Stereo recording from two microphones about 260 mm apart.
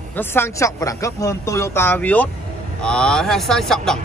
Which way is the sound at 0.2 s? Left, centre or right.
Centre.